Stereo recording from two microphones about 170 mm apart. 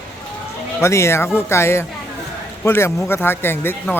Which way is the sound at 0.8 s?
15° left (ahead or behind).